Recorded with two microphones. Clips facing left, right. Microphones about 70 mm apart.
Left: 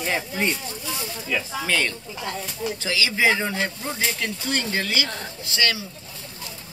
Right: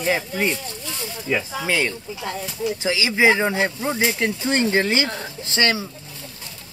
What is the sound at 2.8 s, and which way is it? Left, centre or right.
Speech, right.